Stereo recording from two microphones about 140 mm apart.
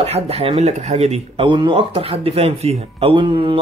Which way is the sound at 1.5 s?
35° right (ahead or behind).